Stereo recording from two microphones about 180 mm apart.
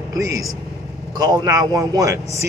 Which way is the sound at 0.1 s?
20° right (ahead or behind).